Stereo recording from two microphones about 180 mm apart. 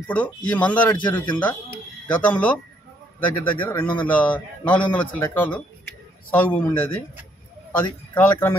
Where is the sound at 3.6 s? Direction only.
10° left (ahead or behind).